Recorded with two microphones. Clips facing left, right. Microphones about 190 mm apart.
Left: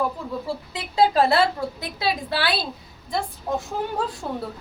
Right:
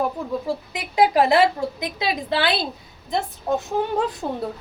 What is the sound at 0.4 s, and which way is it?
A woman's voice, 15° right (ahead or behind).